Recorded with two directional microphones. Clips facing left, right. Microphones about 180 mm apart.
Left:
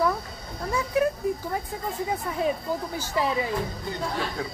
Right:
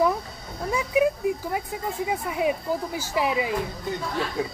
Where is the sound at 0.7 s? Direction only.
15° right (ahead or behind).